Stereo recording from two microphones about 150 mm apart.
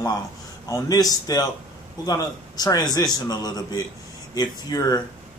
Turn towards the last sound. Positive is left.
turn(degrees=25)  # may be behind; listen again after turning